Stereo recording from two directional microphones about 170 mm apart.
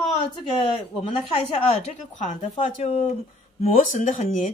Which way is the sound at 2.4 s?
35° left (ahead or behind).